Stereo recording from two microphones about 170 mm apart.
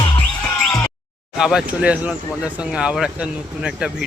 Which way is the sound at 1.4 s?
5° right (ahead or behind).